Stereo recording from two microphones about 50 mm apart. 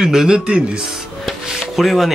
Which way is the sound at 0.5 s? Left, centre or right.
Right.